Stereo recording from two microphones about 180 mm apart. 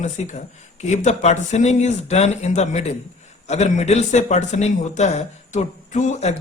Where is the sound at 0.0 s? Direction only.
40° left (ahead or behind).